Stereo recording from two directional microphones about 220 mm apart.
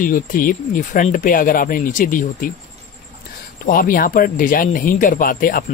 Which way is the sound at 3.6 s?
40° left (ahead or behind).